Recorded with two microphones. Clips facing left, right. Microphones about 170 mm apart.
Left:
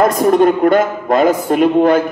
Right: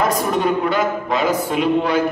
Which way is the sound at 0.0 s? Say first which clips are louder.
Left 8 dB; 50° left (ahead or behind).